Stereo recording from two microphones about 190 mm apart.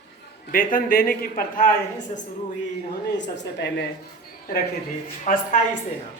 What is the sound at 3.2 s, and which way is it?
Speech, 70° left (ahead or behind).